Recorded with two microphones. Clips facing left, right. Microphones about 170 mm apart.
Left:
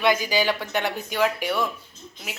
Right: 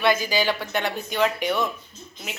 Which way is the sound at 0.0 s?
15° left (ahead or behind).